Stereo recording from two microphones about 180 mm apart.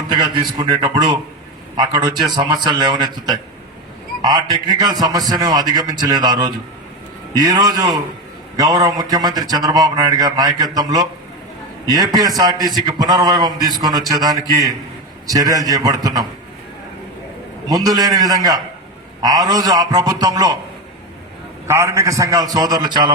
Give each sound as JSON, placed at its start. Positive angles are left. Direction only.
{"t": 0.1, "sound": "a man's voice", "side_deg": -25}
{"t": 17.7, "sound": "a man's voice", "side_deg": -20}
{"t": 21.7, "sound": "a man's voice", "side_deg": -15}